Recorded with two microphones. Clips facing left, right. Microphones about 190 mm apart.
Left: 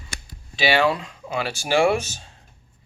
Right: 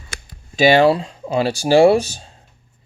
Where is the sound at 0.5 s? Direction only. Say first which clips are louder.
Right 8 dB; 40° right (ahead or behind).